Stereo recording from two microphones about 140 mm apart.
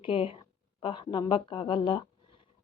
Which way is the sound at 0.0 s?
40° left (ahead or behind).